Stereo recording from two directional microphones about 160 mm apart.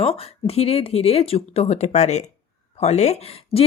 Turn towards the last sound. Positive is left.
turn(degrees=40)  # may be behind; listen again after turning